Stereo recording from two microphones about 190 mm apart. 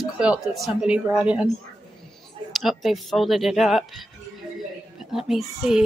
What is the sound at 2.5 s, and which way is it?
A woman's voice, centre (ahead or behind).